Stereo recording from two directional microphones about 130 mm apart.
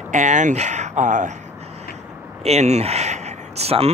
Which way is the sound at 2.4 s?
55° right (ahead or behind).